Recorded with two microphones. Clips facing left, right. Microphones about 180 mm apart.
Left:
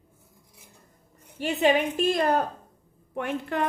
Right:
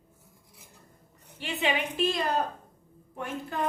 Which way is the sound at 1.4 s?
45° left (ahead or behind).